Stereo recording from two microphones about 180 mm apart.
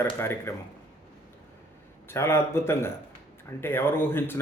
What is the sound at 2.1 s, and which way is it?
Speech, 15° left (ahead or behind).